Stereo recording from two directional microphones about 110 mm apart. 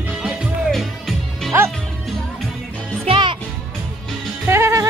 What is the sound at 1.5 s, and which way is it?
Music, 25° right (ahead or behind).